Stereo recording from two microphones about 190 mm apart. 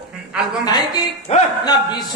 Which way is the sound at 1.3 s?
35° left (ahead or behind).